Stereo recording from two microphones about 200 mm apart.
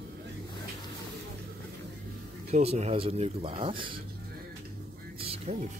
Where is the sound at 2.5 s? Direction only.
30° right (ahead or behind).